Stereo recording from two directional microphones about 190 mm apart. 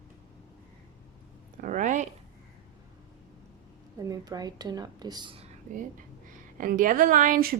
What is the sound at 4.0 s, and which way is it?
A woman's voice, 20° right (ahead or behind).